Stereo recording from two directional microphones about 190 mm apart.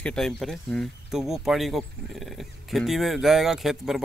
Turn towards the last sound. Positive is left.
turn(degrees=0)  # may be behind; listen again after turning